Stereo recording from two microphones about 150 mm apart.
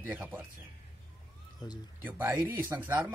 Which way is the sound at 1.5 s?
25° left (ahead or behind).